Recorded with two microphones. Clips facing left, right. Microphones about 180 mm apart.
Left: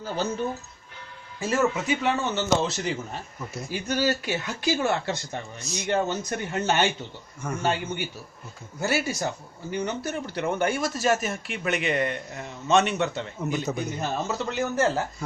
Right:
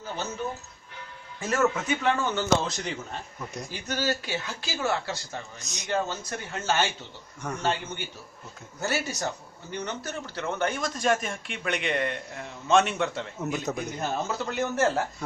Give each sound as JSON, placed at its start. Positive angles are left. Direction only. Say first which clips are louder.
{"t": 1.4, "sound": "a man's voice", "louder": "left 1 dB", "side_deg": 10}